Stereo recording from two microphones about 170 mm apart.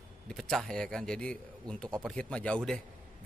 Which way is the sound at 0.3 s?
Centre (ahead or behind).